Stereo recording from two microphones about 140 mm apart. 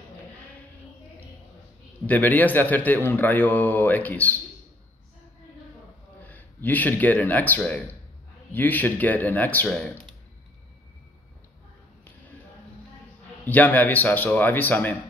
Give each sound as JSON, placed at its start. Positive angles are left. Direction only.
{"t": 2.0, "sound": "a man's voice", "side_deg": 10}
{"t": 6.2, "sound": "a man's voice", "side_deg": 10}
{"t": 13.5, "sound": "a man's voice", "side_deg": 10}